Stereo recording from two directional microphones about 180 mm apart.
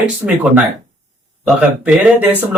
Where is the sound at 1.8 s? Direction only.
10° right (ahead or behind).